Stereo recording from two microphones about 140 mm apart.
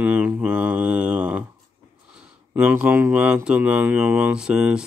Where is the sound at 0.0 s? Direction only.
10° right (ahead or behind).